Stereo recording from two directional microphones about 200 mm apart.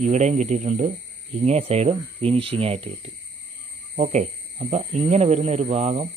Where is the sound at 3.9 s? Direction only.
35° right (ahead or behind).